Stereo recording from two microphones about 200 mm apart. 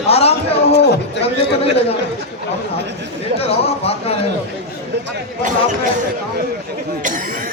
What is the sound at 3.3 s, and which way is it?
Speech, 30° left (ahead or behind).